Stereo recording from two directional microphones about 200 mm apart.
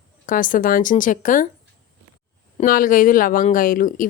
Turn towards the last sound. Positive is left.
turn(degrees=45)  # may be behind; listen again after turning